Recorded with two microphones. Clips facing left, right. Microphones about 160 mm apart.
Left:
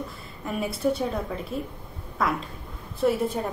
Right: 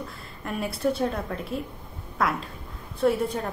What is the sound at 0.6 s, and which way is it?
A woman's voice, centre (ahead or behind).